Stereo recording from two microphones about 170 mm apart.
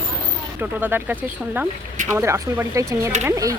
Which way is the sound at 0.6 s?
10° right (ahead or behind).